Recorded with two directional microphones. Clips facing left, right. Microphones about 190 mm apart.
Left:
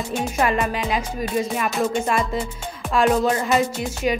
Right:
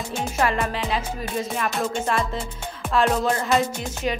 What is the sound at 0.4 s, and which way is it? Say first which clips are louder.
Speech: left 2 dB; 15° left (ahead or behind).